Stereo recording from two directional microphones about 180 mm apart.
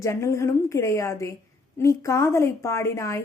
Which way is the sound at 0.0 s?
15° left (ahead or behind).